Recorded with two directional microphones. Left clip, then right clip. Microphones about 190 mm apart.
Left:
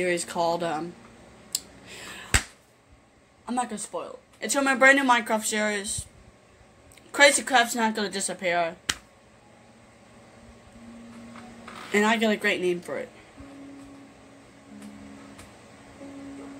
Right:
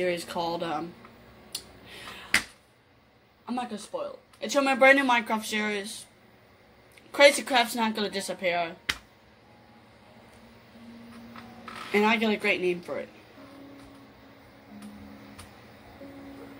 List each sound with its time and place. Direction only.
0.0 s speech: 20° left (ahead or behind)
1.5 s clicking: 15° left (ahead or behind)
3.4 s speech: 30° left (ahead or behind)
7.1 s a woman's voice: 20° left (ahead or behind)
11.9 s speech: 20° left (ahead or behind)